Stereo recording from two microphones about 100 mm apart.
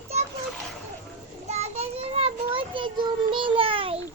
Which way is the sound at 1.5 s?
90° right.